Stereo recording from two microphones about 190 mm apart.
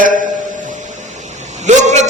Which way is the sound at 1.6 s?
40° right (ahead or behind).